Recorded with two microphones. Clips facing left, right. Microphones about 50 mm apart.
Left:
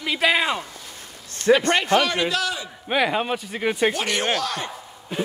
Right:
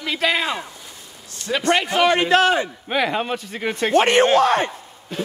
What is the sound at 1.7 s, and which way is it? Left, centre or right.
Speech, centre.